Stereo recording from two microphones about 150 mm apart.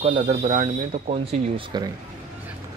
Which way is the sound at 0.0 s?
50° right (ahead or behind).